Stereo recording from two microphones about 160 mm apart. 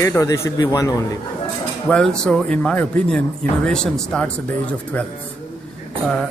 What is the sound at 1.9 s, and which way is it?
Speech, 5° left (ahead or behind).